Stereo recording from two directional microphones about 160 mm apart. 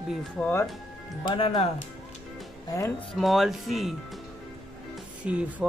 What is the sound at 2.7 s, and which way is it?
Speech, 20° left (ahead or behind).